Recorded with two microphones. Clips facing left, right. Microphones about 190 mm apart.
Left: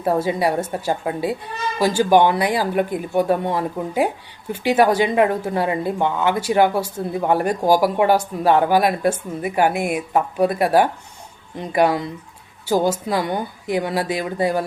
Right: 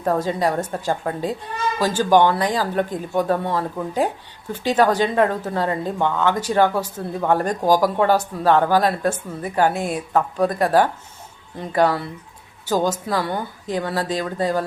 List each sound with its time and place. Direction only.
0.0 s a woman's voice: 10° left (ahead or behind)